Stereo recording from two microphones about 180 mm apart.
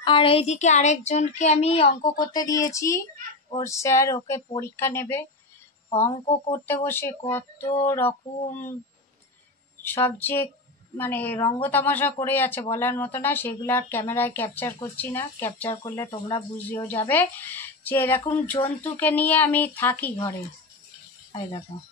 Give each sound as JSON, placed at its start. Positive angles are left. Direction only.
{"t": 0.0, "sound": "a woman's voice", "side_deg": 30}
{"t": 2.1, "sound": "a sound", "side_deg": 20}
{"t": 3.4, "sound": "a woman's voice", "side_deg": 20}
{"t": 6.0, "sound": "a woman's voice", "side_deg": 35}
{"t": 6.5, "sound": "a woman's voice", "side_deg": 15}
{"t": 9.8, "sound": "a woman's voice", "side_deg": 10}
{"t": 21.3, "sound": "speech", "side_deg": 20}